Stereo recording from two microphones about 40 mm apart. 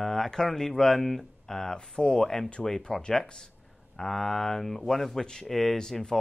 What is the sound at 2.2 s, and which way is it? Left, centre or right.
Speech, centre.